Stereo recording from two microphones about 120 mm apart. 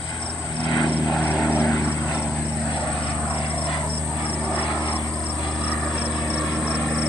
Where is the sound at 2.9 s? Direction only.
10° left (ahead or behind).